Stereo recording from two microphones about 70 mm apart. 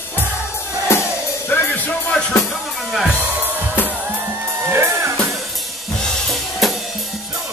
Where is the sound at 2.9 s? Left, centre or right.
Centre.